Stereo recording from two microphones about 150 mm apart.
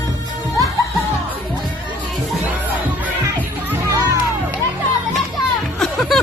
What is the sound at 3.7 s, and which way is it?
Music, 20° right (ahead or behind).